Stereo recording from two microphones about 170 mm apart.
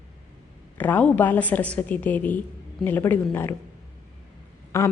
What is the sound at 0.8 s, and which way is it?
Speech, 10° left (ahead or behind).